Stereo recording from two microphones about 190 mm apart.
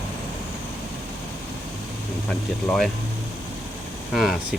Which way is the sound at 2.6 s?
Centre (ahead or behind).